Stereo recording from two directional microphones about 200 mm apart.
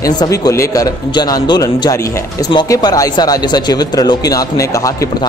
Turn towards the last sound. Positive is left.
turn(degrees=15)  # may be behind; listen again after turning